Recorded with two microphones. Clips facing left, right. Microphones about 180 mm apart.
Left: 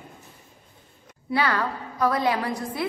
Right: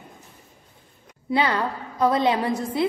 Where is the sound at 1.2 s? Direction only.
20° right (ahead or behind).